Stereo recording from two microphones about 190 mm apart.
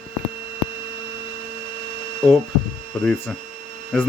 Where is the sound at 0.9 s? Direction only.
65° right (ahead or behind).